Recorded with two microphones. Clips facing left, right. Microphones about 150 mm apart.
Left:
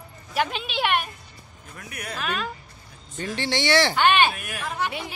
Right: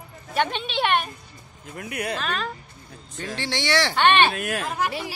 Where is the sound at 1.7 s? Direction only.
60° right (ahead or behind).